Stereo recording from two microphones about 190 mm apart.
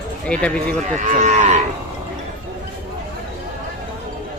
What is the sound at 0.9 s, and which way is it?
Cattle, 40° right (ahead or behind).